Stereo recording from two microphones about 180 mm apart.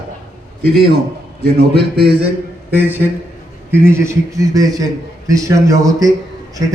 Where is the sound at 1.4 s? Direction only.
60° right (ahead or behind).